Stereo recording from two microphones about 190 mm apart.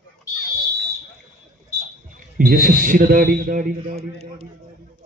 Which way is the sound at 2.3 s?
50° right (ahead or behind).